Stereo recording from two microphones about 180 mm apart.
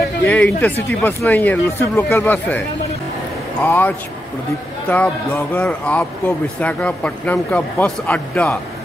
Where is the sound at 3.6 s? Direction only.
10° left (ahead or behind).